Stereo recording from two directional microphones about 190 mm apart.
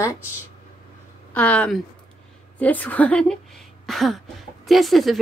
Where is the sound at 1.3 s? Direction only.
5° left (ahead or behind).